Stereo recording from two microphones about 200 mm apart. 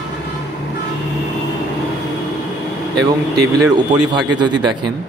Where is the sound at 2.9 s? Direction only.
20° right (ahead or behind).